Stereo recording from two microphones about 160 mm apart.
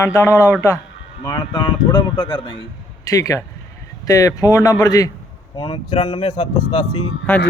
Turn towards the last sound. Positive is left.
turn(degrees=5)  # may be behind; listen again after turning